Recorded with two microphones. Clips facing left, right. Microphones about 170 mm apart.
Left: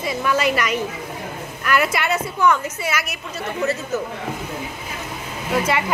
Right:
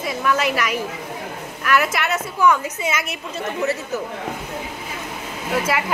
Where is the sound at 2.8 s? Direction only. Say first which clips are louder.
Right 1 dB; 25° right (ahead or behind).